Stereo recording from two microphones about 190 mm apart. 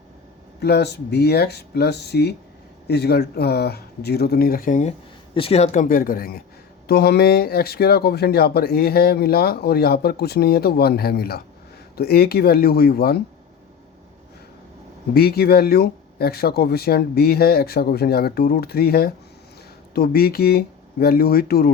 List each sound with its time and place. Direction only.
0.6 s speech: 60° left (ahead or behind)
15.1 s speech: 55° left (ahead or behind)